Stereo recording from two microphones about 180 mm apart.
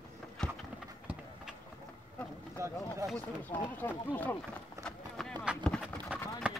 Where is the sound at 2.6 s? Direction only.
15° right (ahead or behind).